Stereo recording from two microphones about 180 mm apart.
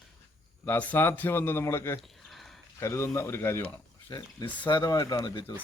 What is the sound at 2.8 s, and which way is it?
Speech, 15° left (ahead or behind).